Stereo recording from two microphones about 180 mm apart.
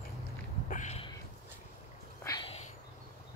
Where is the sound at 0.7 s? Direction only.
40° left (ahead or behind).